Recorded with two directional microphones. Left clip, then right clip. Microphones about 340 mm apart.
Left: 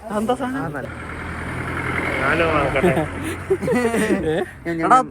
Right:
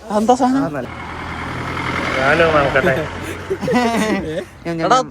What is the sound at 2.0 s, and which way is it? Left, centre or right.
Speech, right.